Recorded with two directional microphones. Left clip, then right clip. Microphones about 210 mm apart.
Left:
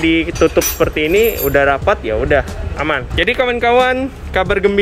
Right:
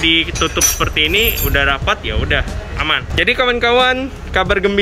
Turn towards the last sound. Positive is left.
turn(degrees=10)  # may be behind; listen again after turning